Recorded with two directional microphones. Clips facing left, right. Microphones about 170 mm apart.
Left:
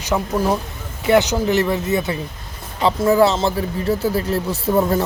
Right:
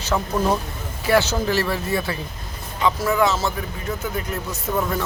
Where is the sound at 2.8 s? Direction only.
30° left (ahead or behind).